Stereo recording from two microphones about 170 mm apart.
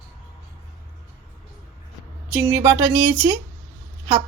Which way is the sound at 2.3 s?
20° right (ahead or behind).